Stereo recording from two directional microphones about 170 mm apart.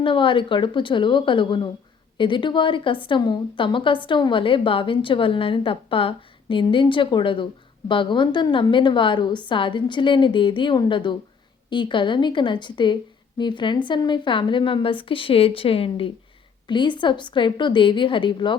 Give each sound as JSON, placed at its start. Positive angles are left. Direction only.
{"t": 0.0, "sound": "a woman's voice", "side_deg": 30}